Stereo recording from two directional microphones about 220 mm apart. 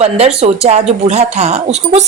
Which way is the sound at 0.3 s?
30° right (ahead or behind).